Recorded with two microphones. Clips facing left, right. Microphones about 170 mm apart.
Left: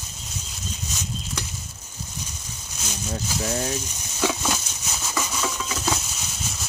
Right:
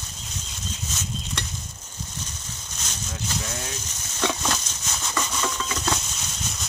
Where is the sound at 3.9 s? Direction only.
10° left (ahead or behind).